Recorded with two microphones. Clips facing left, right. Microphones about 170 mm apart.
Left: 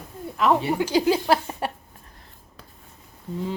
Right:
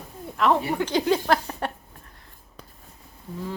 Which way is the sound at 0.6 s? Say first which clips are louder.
Left 3 dB; 15° left (ahead or behind).